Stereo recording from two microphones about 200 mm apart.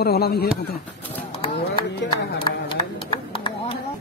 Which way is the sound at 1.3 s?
30° left (ahead or behind).